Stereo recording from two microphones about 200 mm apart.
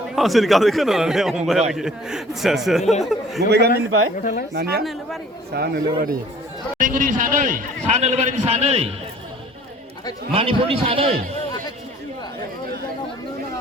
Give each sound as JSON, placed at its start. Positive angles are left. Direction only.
{"t": 0.2, "sound": "speech", "side_deg": 0}
{"t": 3.8, "sound": "speech", "side_deg": -80}
{"t": 4.2, "sound": "speech", "side_deg": 45}
{"t": 4.5, "sound": "a man's voice", "side_deg": -55}
{"t": 10.3, "sound": "a man's voice", "side_deg": -30}